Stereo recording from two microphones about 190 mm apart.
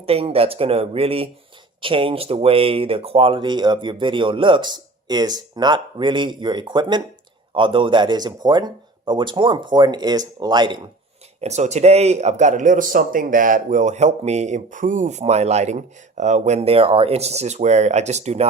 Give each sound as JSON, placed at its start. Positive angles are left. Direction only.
{"t": 0.0, "sound": "speech", "side_deg": -30}
{"t": 11.3, "sound": "speech", "side_deg": -35}